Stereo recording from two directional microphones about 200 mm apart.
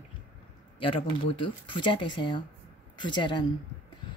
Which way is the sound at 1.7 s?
25° left (ahead or behind).